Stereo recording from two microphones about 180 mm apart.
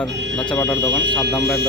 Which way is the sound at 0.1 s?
75° right (ahead or behind).